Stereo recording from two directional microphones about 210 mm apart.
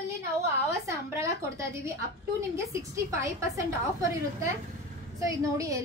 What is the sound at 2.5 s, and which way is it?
A woman's voice, 15° right (ahead or behind).